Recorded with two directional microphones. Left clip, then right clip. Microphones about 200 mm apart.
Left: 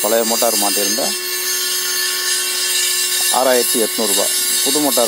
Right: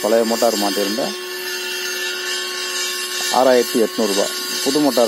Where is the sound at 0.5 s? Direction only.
35° left (ahead or behind).